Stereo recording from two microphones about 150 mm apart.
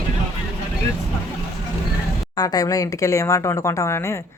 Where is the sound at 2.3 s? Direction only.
25° left (ahead or behind).